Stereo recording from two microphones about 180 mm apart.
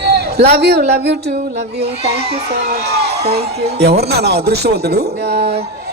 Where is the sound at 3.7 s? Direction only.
65° right (ahead or behind).